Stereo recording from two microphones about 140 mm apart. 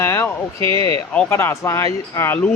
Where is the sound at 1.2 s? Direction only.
20° left (ahead or behind).